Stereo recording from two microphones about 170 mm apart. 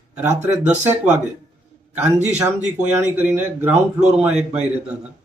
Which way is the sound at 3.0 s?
10° right (ahead or behind).